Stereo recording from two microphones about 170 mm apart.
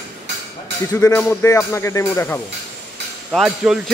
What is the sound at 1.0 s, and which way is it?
Speech, 15° left (ahead or behind).